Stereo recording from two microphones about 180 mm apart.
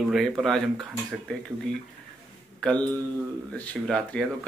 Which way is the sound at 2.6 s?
5° left (ahead or behind).